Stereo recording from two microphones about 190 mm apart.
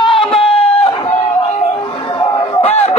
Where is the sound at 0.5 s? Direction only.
30° left (ahead or behind).